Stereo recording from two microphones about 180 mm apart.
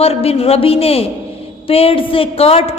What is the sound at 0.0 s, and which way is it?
A woman's voice, 35° left (ahead or behind).